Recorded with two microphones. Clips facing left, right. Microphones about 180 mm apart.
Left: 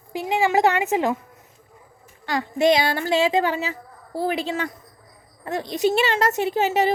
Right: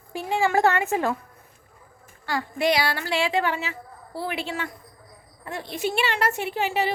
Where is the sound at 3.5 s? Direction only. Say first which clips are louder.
Left 4 dB; 40° left (ahead or behind).